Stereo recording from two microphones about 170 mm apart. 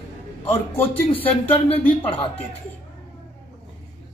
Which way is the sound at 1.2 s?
10° left (ahead or behind).